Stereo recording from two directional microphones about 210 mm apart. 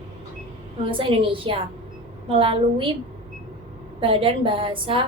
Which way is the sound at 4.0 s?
25° right (ahead or behind).